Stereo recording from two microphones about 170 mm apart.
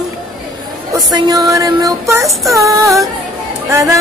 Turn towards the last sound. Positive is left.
turn(degrees=-15)  # may be behind; listen again after turning